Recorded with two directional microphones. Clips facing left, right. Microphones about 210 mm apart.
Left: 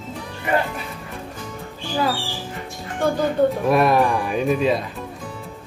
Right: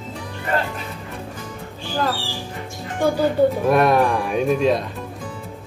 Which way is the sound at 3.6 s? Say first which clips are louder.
Right 1 dB; centre (ahead or behind).